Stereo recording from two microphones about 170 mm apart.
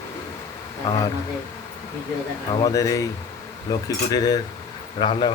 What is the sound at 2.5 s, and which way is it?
Speech, 20° left (ahead or behind).